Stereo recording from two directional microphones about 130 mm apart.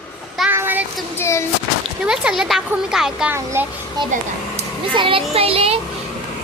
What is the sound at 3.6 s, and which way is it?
Speech, 15° right (ahead or behind).